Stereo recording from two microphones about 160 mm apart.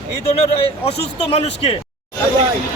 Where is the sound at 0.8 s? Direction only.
40° left (ahead or behind).